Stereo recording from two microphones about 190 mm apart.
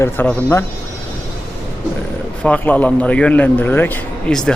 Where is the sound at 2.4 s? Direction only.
5° left (ahead or behind).